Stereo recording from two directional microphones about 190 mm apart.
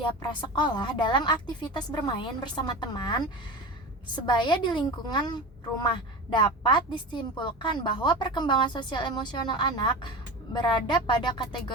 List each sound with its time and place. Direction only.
0.2 s a woman's voice: 20° left (ahead or behind)